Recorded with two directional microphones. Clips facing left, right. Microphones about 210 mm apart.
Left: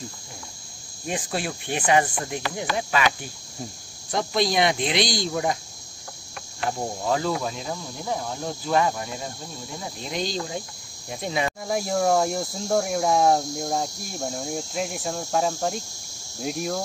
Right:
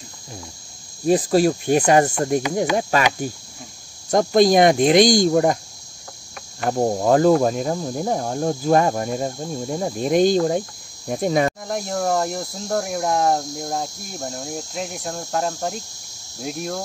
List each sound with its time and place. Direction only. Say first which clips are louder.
1.0 s speech: right 12 dB; 35° right (ahead or behind)
2.8 s cricket: right 4 dB; 45° right (ahead or behind)
6.6 s cricket: right 8 dB; 50° right (ahead or behind)
11.6 s speech: left 1 dB; 5° left (ahead or behind)